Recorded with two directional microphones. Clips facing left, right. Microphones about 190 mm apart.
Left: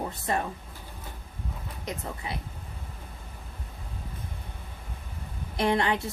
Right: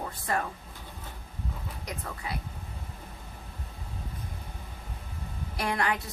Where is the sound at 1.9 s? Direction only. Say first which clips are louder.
Left 3 dB; 25° left (ahead or behind).